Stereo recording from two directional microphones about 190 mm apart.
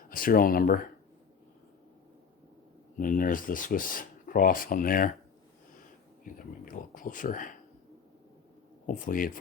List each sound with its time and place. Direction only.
0.1 s speech: 50° left (ahead or behind)
3.0 s speech: 45° left (ahead or behind)
6.2 s speech: 45° left (ahead or behind)
8.9 s speech: 45° left (ahead or behind)